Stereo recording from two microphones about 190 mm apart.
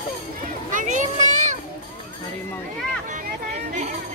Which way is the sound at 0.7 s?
40° right (ahead or behind).